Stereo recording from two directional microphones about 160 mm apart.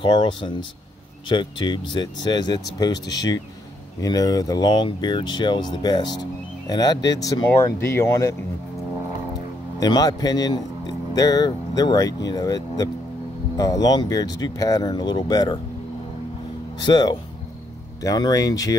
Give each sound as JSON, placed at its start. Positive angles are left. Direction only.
{"t": 0.0, "sound": "speech", "side_deg": 30}
{"t": 9.8, "sound": "speech", "side_deg": 25}
{"t": 16.8, "sound": "speech", "side_deg": 25}